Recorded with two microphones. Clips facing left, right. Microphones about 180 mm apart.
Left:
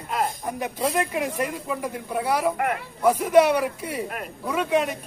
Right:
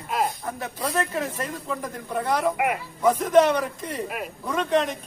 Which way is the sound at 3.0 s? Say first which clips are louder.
Left 1 dB; 10° left (ahead or behind).